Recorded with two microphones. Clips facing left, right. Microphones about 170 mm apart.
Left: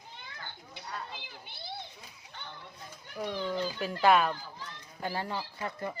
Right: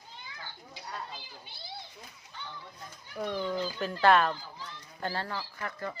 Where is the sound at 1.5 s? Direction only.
60° left (ahead or behind).